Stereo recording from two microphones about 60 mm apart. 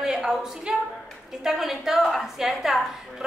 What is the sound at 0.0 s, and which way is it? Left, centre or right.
A woman's voice, centre.